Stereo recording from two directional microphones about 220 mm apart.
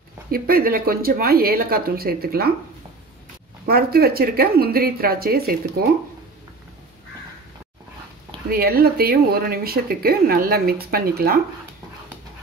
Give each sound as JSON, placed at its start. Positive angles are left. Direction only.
{"t": 0.3, "sound": "speech", "side_deg": -40}
{"t": 3.6, "sound": "speech", "side_deg": -45}
{"t": 8.5, "sound": "speech", "side_deg": -45}